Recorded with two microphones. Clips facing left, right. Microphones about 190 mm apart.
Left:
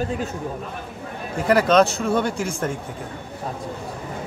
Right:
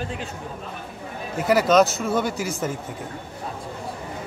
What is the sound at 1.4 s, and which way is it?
Speech, 5° right (ahead or behind).